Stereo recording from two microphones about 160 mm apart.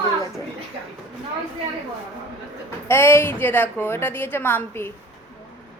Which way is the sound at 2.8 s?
15° left (ahead or behind).